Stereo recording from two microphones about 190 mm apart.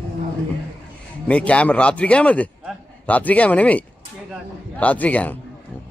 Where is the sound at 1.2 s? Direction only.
5° left (ahead or behind).